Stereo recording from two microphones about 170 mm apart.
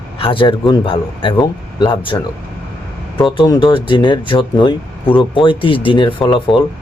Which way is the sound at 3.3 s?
25° left (ahead or behind).